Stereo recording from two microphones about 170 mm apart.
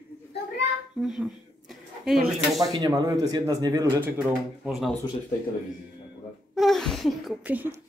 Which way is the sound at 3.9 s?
10° right (ahead or behind).